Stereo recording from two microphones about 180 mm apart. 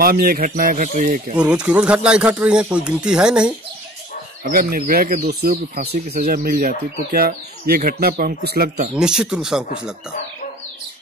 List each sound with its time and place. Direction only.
0.0 s speech: 55° right (ahead or behind)
1.4 s speech: 5° right (ahead or behind)
4.5 s speech: 55° right (ahead or behind)
8.9 s speech: 5° right (ahead or behind)